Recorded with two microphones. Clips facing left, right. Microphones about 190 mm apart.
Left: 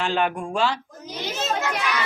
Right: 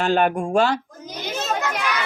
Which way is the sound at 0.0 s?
45° right (ahead or behind).